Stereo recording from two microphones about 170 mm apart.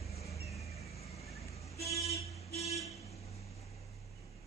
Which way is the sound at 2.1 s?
40° left (ahead or behind).